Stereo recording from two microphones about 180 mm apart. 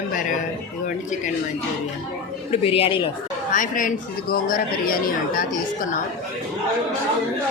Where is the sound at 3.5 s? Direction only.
45° left (ahead or behind).